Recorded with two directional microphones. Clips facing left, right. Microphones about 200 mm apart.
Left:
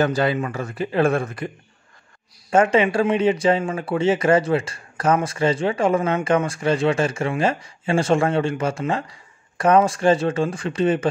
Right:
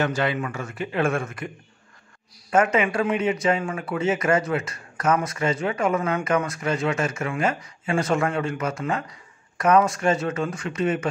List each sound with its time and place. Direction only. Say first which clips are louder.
0.0 s speech: left 4 dB; 35° left (ahead or behind)
2.5 s speech: left 4 dB; 30° left (ahead or behind)